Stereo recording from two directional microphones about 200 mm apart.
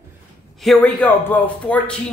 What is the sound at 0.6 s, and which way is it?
A man's voice, 5° left (ahead or behind).